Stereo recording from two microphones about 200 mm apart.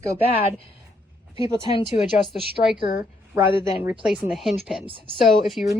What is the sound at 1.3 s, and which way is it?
Speech, 25° left (ahead or behind).